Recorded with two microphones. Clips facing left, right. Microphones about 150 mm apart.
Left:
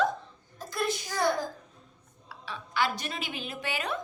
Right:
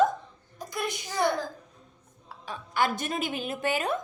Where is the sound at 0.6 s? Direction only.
15° right (ahead or behind).